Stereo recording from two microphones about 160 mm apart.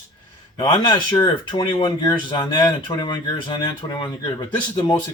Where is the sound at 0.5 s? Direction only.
30° left (ahead or behind).